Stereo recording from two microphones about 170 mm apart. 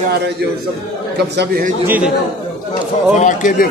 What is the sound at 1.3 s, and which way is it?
Speech, 80° right.